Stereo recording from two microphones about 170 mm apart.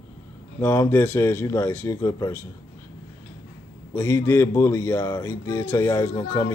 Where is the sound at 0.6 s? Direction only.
15° left (ahead or behind).